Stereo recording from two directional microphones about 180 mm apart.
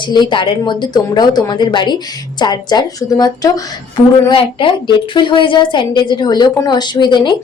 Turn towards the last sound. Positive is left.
turn(degrees=25)  # may be behind; listen again after turning